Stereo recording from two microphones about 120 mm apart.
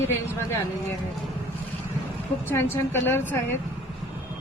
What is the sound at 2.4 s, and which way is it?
Speech, 20° left (ahead or behind).